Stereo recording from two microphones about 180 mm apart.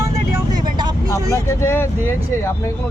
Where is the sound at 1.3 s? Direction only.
15° left (ahead or behind).